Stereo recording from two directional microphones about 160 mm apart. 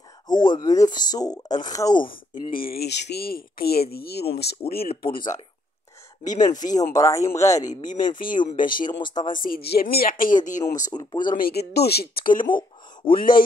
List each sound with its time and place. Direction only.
0.3 s speech: 25° left (ahead or behind)
2.0 s speech: 65° left (ahead or behind)
6.2 s speech: 25° left (ahead or behind)
8.5 s speech: 55° left (ahead or behind)
8.7 s speech: 30° left (ahead or behind)
9.4 s speech: 70° left (ahead or behind); by 10.6 s 55° left (ahead or behind)
10.9 s speech: 25° left (ahead or behind)
11.2 s speech: 65° left (ahead or behind)